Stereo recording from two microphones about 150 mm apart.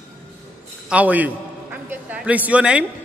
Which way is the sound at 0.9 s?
10° right (ahead or behind).